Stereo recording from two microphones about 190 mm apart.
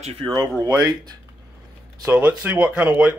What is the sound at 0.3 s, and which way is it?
Speech, 20° right (ahead or behind).